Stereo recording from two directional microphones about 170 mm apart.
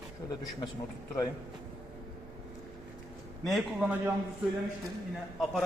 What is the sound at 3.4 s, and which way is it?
Speech, centre (ahead or behind).